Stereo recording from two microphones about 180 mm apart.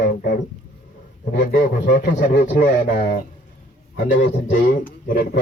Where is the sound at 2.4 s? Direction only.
45° left (ahead or behind).